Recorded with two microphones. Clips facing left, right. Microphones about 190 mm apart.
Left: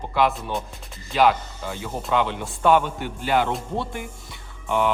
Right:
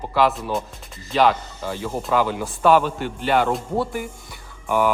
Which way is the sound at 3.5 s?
5° right (ahead or behind).